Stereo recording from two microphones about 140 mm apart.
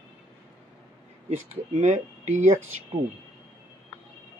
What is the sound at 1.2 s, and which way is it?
Speech, 55° right (ahead or behind).